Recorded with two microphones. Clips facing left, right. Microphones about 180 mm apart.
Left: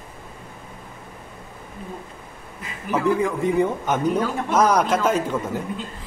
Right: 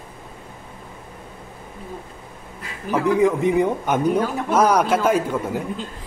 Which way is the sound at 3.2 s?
20° right (ahead or behind).